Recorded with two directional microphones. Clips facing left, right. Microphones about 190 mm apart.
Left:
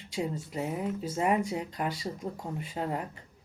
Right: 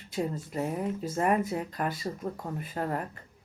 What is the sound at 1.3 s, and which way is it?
Speech, 20° left (ahead or behind).